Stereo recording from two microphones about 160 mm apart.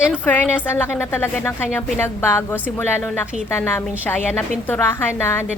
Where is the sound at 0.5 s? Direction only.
15° left (ahead or behind).